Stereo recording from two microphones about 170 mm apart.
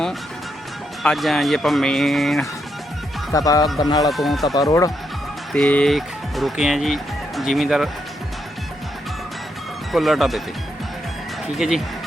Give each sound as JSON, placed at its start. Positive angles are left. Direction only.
{"t": 1.0, "sound": "speech", "side_deg": 0}
{"t": 3.3, "sound": "speech", "side_deg": 20}
{"t": 4.1, "sound": "speech", "side_deg": 0}
{"t": 4.5, "sound": "speech", "side_deg": 20}
{"t": 5.5, "sound": "speech", "side_deg": 5}
{"t": 9.9, "sound": "speech", "side_deg": 0}
{"t": 11.5, "sound": "speech", "side_deg": 0}